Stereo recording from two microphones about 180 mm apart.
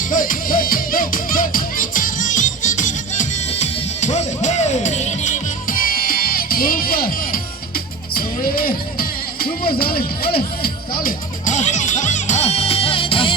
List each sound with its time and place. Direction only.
0.1 s music: 50° left (ahead or behind)
8.1 s music: 55° left (ahead or behind); by 13.3 s 30° left (ahead or behind)